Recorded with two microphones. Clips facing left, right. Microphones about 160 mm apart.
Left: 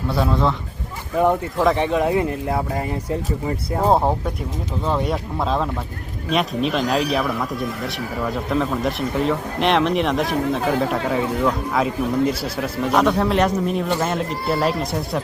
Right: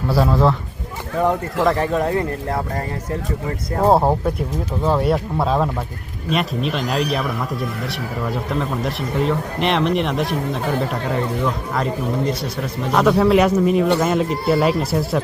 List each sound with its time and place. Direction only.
0.1 s speech: centre (ahead or behind)
1.2 s speech: 15° left (ahead or behind)
1.6 s speech: centre (ahead or behind)
3.8 s speech: 5° right (ahead or behind)
8.4 s speech: centre (ahead or behind)
13.0 s speech: 5° right (ahead or behind)